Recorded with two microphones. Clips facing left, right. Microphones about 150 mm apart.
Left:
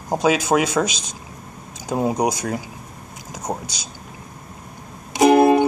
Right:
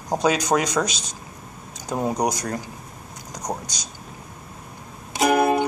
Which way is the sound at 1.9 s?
10° left (ahead or behind).